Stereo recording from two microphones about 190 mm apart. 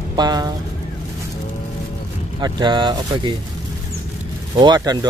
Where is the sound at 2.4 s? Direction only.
25° right (ahead or behind).